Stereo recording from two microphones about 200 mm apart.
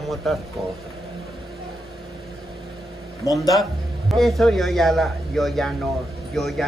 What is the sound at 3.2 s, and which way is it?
Speech, 15° left (ahead or behind).